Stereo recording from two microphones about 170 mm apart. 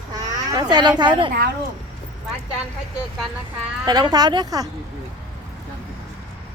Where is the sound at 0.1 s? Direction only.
25° right (ahead or behind).